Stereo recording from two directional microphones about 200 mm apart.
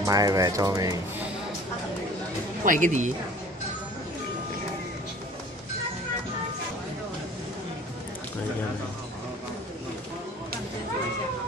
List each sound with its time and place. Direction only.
0.0 s speech: 20° right (ahead or behind)
2.6 s a woman's voice: 40° right (ahead or behind)